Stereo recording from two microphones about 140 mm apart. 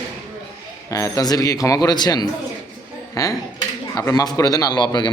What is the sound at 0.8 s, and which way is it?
A man's voice, 25° left (ahead or behind).